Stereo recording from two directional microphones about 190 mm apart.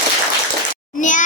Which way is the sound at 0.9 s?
40° left (ahead or behind).